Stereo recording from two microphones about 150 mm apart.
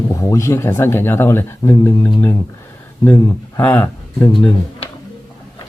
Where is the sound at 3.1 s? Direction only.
25° left (ahead or behind).